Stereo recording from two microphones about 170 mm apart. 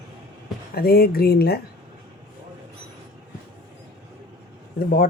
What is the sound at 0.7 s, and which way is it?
Speech, 65° left (ahead or behind).